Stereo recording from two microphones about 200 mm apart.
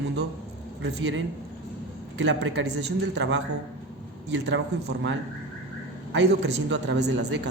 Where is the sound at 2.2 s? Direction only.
65° right (ahead or behind).